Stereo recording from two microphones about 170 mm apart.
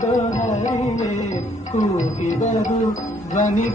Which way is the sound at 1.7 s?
45° left (ahead or behind).